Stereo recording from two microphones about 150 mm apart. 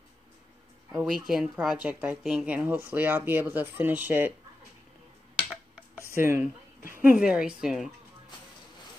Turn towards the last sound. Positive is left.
turn(degrees=-5)  # may be behind; listen again after turning